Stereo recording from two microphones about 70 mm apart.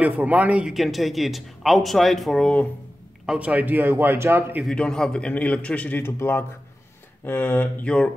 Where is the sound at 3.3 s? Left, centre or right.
Right.